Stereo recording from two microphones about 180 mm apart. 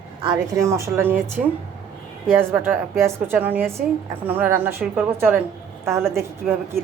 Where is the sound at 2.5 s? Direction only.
10° right (ahead or behind).